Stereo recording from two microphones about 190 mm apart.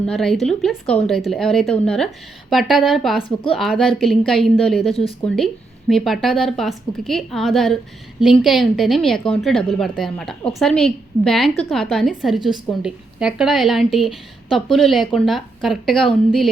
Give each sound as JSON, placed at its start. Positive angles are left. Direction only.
{"t": 0.0, "sound": "a woman's voice", "side_deg": 5}